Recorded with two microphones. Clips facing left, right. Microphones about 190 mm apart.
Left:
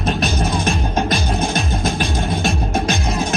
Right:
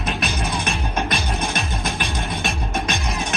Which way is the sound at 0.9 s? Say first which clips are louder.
Left 5 dB; 30° left (ahead or behind).